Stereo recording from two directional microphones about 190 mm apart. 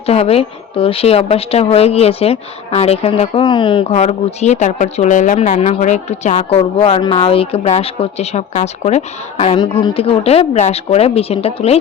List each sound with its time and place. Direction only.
0.0 s speech: 30° left (ahead or behind)